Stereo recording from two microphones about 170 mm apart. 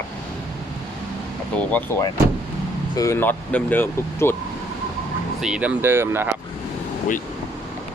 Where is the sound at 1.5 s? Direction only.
5° left (ahead or behind).